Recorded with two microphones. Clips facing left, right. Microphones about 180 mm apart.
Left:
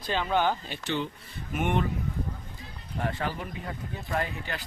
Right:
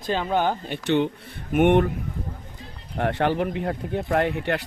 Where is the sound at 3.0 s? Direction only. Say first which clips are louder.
Right 9 dB; 70° right (ahead or behind).